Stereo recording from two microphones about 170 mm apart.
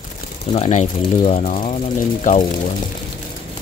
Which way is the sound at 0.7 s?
45° left (ahead or behind).